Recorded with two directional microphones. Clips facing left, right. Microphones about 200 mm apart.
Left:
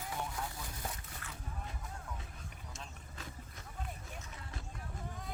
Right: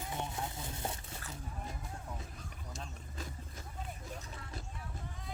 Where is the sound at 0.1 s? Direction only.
25° right (ahead or behind).